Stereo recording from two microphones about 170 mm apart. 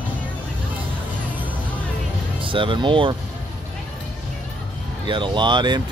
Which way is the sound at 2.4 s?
30° right (ahead or behind).